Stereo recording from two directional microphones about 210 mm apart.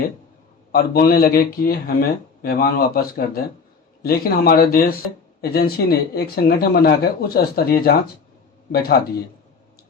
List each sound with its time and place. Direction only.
0.7 s speech: 45° left (ahead or behind)